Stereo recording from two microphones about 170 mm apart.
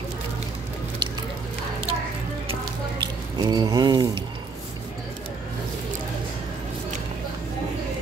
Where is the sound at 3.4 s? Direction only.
25° right (ahead or behind).